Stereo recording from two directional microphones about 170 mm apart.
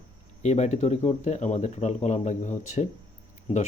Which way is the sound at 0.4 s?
40° left (ahead or behind).